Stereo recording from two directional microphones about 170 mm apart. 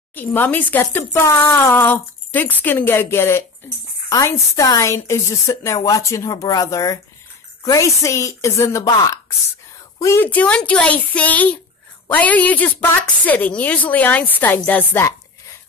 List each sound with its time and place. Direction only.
0.1 s a woman's voice: 10° left (ahead or behind)